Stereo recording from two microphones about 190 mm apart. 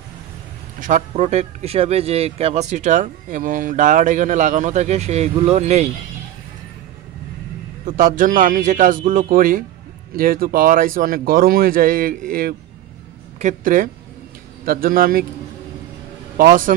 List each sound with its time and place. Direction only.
0.7 s speech: 40° right (ahead or behind)
7.8 s speech: 45° right (ahead or behind)
16.3 s speech: 45° right (ahead or behind)